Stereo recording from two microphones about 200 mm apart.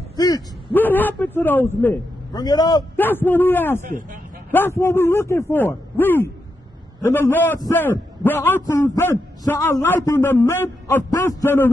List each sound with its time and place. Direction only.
0.1 s a sound: 20° left (ahead or behind)
2.3 s a man's voice: 20° left (ahead or behind)
3.0 s a man's voice: 10° left (ahead or behind)
3.8 s speech: 40° right (ahead or behind)
4.5 s a man's voice: 10° left (ahead or behind)